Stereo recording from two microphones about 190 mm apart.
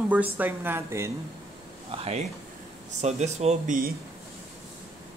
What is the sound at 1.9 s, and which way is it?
Speech, 30° right (ahead or behind).